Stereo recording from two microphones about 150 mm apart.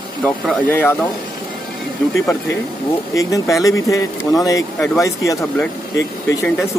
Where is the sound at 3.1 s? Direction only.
20° left (ahead or behind).